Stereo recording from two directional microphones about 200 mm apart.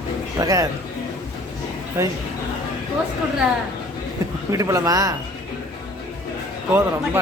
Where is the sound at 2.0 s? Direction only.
15° right (ahead or behind).